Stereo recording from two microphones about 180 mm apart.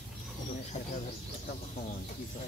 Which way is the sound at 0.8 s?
35° left (ahead or behind).